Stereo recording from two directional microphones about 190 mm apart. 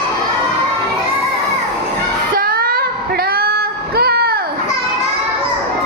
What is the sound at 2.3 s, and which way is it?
Child singing, 50° right (ahead or behind).